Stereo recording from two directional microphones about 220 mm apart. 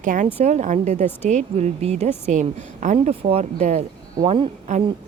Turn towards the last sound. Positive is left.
turn(degrees=-30)  # may be behind; listen again after turning